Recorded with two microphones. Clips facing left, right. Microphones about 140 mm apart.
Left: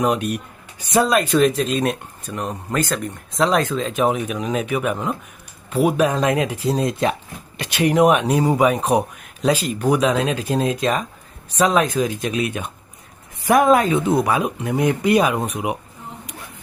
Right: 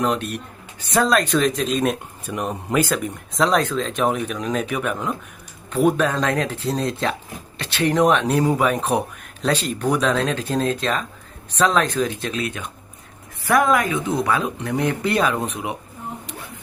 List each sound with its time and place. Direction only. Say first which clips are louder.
0.0 s speech: left 2 dB; 15° left (ahead or behind)